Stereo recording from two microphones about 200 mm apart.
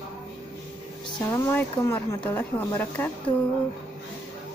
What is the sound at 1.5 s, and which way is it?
Speech, 10° left (ahead or behind).